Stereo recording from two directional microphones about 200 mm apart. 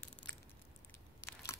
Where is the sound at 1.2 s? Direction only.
15° left (ahead or behind).